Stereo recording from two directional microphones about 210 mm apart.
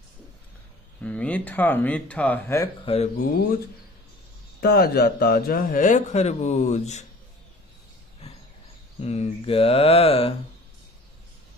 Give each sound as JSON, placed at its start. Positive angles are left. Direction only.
{"t": 1.0, "sound": "speech", "side_deg": 5}
{"t": 2.8, "sound": "speech", "side_deg": 25}
{"t": 4.6, "sound": "speech", "side_deg": 45}
{"t": 9.0, "sound": "speech", "side_deg": 30}